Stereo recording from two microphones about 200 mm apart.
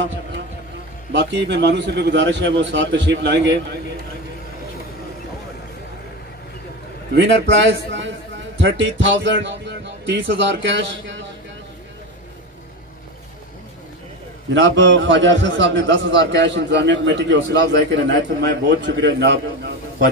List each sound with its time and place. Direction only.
1.1 s a man's voice: 60° right (ahead or behind)
7.2 s a man's voice: 65° right (ahead or behind)
14.5 s a man's voice: 65° right (ahead or behind)